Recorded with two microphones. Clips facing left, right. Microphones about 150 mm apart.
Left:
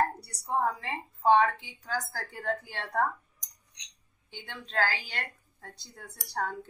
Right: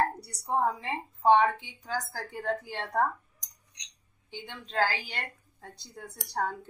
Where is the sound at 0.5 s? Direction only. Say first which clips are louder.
Right 1 dB; 20° right (ahead or behind).